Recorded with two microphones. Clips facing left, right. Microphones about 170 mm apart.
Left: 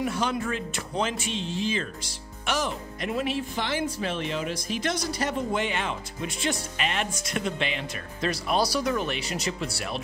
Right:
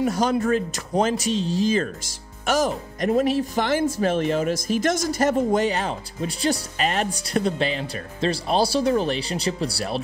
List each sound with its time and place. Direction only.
0.0 s speech: 40° right (ahead or behind)